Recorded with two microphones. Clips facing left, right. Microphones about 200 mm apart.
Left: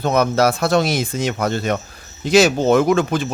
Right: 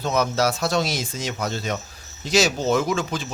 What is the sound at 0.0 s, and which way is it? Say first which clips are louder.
Speech: left 5 dB; 55° left (ahead or behind).